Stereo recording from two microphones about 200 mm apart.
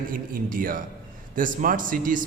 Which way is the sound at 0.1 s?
45° right (ahead or behind).